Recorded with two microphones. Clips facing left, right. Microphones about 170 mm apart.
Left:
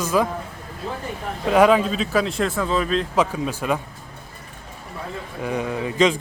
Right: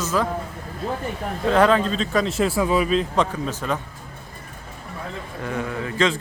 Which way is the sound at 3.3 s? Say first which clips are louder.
Left 2 dB; 10° left (ahead or behind).